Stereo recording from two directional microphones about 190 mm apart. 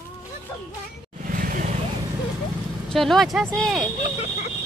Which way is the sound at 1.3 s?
45° right (ahead or behind).